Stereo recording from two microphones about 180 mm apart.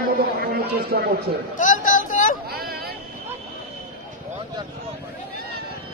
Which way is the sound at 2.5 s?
60° right (ahead or behind).